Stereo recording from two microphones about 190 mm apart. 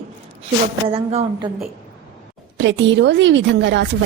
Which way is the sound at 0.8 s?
30° right (ahead or behind).